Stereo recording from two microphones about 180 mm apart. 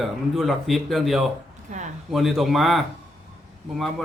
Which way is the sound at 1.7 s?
45° right (ahead or behind).